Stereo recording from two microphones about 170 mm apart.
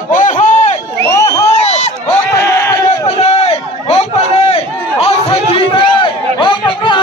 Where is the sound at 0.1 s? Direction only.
45° left (ahead or behind).